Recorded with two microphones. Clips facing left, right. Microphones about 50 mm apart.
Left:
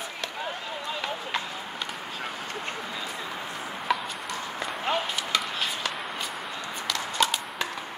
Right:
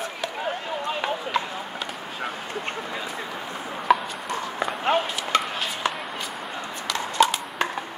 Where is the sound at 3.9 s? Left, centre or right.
Centre.